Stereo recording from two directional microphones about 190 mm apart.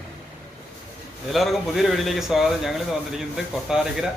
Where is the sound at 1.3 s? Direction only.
Centre (ahead or behind).